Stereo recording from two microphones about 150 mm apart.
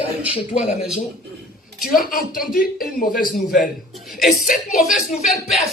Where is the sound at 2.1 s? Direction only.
70° left (ahead or behind).